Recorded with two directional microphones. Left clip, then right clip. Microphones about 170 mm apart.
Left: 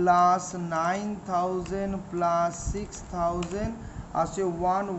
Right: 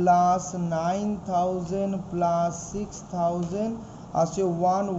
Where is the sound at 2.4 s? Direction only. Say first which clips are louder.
Right 1 dB; 30° left (ahead or behind).